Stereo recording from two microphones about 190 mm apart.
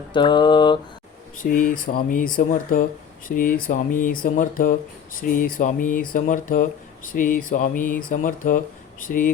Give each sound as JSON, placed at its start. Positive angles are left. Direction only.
{"t": 0.1, "sound": "mantra", "side_deg": 25}
{"t": 1.4, "sound": "speech", "side_deg": 45}